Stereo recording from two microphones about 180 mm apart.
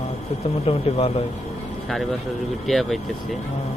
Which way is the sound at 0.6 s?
30° left (ahead or behind).